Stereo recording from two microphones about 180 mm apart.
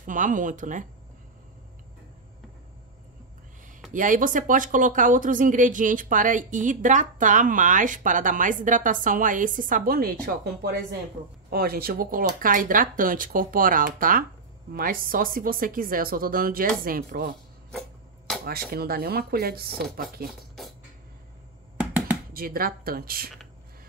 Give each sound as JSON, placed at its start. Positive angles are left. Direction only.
{"t": 0.0, "sound": "speech", "side_deg": -45}
{"t": 3.9, "sound": "speech", "side_deg": -45}
{"t": 18.4, "sound": "speech", "side_deg": -60}
{"t": 20.2, "sound": "speech", "side_deg": 0}
{"t": 22.3, "sound": "speech", "side_deg": -55}